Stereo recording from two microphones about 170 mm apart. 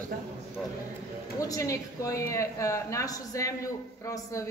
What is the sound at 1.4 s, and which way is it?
Speech, 20° left (ahead or behind).